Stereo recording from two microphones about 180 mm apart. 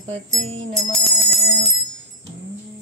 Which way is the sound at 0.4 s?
90° right.